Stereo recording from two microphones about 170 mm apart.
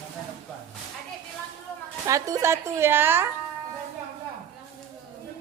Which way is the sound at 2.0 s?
20° right (ahead or behind).